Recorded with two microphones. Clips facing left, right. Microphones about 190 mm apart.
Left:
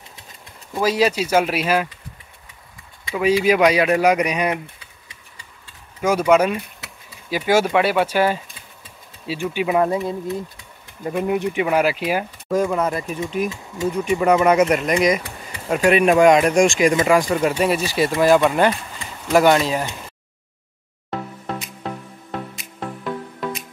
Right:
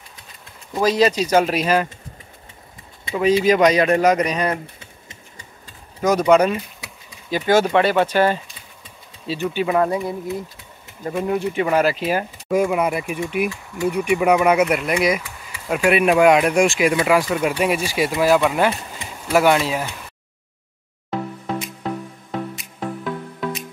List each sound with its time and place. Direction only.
0.7 s speech: 10° left (ahead or behind)
3.2 s speech: 10° left (ahead or behind)
5.9 s speech: 10° left (ahead or behind)
10.0 s speech: 15° right (ahead or behind)
11.1 s speech: 15° left (ahead or behind)
12.4 s speech: 10° right (ahead or behind)
15.2 s a sound: 35° left (ahead or behind)
15.7 s speech: 5° right (ahead or behind)
22.8 s music: centre (ahead or behind)